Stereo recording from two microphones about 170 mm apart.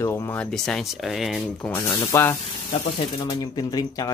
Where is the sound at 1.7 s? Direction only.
15° left (ahead or behind).